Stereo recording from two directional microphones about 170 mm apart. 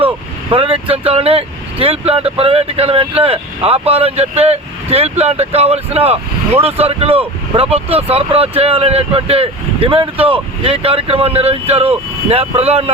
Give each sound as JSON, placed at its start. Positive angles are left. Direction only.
{"t": 0.5, "sound": "speech", "side_deg": -35}